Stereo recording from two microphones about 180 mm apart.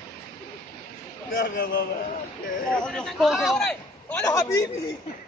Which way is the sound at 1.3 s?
55° left (ahead or behind).